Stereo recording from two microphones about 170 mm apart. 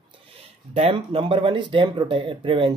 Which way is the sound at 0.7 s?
35° right (ahead or behind).